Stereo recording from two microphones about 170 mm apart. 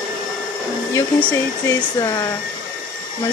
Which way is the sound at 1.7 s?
20° left (ahead or behind).